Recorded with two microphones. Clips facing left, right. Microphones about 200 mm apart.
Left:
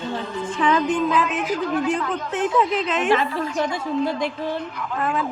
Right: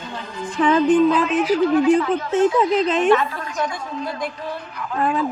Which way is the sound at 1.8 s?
5° right (ahead or behind).